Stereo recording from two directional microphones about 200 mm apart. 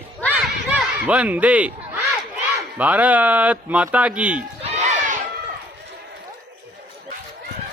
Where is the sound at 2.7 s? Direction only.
5° right (ahead or behind).